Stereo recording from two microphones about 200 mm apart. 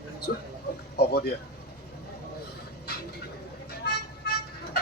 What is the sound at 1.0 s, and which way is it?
Speech, 55° left (ahead or behind).